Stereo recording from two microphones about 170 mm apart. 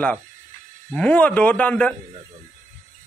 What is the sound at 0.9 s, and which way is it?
Speech, 5° left (ahead or behind).